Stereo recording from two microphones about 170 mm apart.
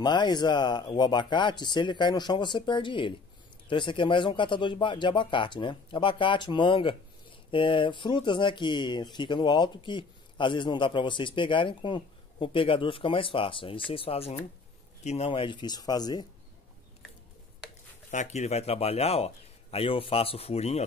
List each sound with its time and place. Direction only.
0.0 s speech: 25° left (ahead or behind)
18.1 s speech: 45° left (ahead or behind)